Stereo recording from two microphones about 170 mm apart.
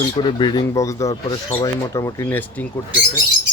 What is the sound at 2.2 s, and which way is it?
Speech, 10° left (ahead or behind).